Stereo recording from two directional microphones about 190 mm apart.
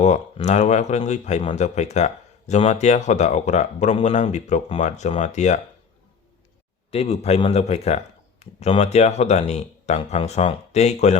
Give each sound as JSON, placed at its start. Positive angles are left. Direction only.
{"t": 0.0, "sound": "speech", "side_deg": 35}
{"t": 6.9, "sound": "speech", "side_deg": 35}